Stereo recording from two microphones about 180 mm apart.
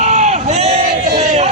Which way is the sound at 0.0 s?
40° right (ahead or behind).